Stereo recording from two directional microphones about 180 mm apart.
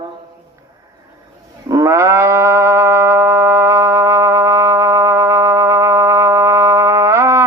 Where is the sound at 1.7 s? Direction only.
15° right (ahead or behind).